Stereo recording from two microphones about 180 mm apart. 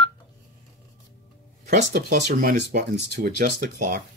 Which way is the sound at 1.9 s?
50° right (ahead or behind).